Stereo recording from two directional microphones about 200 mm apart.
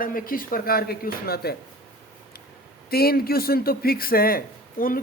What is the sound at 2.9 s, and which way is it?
Speech, 50° left (ahead or behind).